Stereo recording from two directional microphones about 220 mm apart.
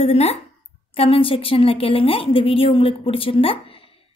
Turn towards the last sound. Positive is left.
turn(degrees=25)  # may be behind; listen again after turning